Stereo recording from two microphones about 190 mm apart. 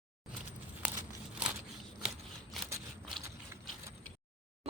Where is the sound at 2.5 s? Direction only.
Centre (ahead or behind).